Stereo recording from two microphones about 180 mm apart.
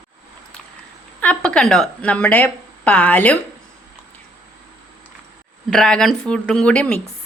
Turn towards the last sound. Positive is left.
turn(degrees=5)  # may be behind; listen again after turning